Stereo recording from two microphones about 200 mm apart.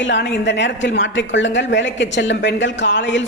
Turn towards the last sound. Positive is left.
turn(degrees=65)  # may be behind; listen again after turning